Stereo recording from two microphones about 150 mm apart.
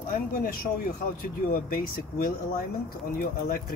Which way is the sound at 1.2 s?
75° left (ahead or behind).